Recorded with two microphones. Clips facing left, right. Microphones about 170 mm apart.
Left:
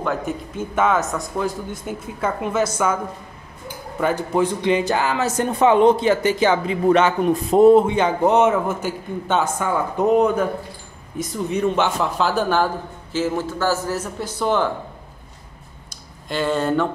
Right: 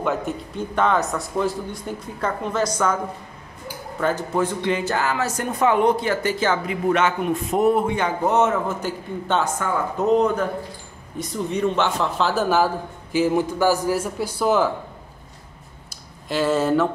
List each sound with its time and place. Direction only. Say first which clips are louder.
0.0 s a man's voice: even; centre (ahead or behind)
4.0 s speech: left 2 dB; 15° left (ahead or behind)
11.5 s a man's voice: left 2 dB; 5° left (ahead or behind)
15.9 s speech: right 1 dB; 5° right (ahead or behind)